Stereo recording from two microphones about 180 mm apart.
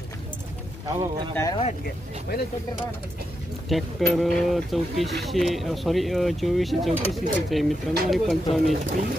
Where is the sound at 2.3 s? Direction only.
60° left (ahead or behind).